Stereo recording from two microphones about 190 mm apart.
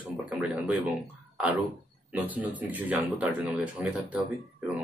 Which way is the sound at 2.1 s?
10° right (ahead or behind).